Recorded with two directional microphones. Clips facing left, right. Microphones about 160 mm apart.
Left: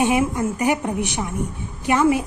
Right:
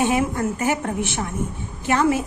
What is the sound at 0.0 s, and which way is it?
A woman's voice, 20° left (ahead or behind).